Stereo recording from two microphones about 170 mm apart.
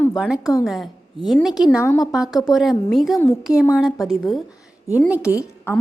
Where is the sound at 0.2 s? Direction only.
5° right (ahead or behind).